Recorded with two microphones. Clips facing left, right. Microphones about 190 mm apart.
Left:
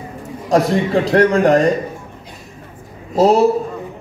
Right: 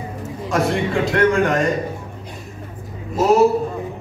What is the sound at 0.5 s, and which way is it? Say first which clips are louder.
A man's voice: left 5 dB; 35° left (ahead or behind).